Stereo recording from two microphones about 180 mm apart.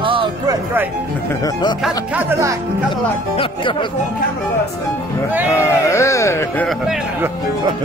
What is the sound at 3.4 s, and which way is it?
Speech, 25° left (ahead or behind).